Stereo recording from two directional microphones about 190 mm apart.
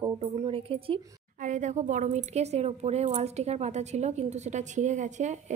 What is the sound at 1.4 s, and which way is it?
A woman's voice, 40° right (ahead or behind).